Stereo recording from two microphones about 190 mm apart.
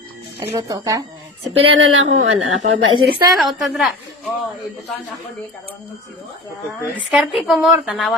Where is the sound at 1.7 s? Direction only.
90° right.